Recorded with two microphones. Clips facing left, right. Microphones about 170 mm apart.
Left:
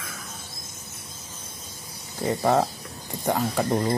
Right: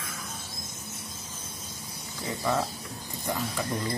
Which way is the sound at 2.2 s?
60° left (ahead or behind).